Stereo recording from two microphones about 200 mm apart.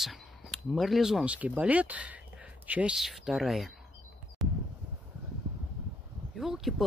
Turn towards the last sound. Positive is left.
turn(degrees=0)  # may be behind; listen again after turning